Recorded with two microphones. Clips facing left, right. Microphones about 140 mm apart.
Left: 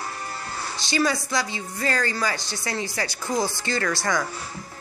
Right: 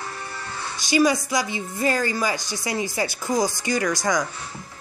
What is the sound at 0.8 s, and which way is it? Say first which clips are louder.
A woman's voice: right 5 dB; 15° right (ahead or behind).